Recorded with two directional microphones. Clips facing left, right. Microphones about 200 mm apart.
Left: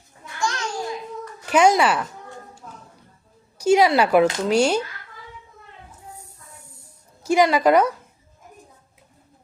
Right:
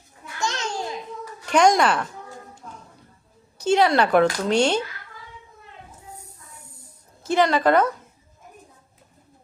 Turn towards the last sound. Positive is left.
turn(degrees=10)  # may be behind; listen again after turning